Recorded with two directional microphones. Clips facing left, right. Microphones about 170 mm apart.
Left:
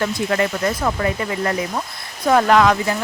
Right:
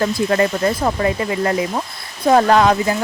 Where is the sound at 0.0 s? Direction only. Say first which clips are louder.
Right 3 dB; 30° right (ahead or behind).